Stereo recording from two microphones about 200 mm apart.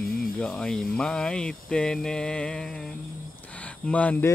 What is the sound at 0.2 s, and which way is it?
Speech, 5° left (ahead or behind).